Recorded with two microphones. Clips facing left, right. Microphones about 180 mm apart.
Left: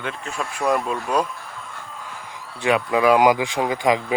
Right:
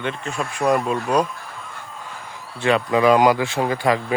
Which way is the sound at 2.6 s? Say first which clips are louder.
Right 1 dB; 10° left (ahead or behind).